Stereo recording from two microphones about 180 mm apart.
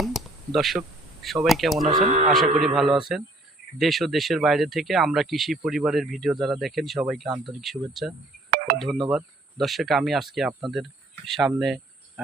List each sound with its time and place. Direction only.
0.0 s speech: centre (ahead or behind)
2.0 s speech: 40° right (ahead or behind)
2.6 s speech: centre (ahead or behind)
8.5 s cricket: 55° right (ahead or behind)
8.8 s speech: centre (ahead or behind)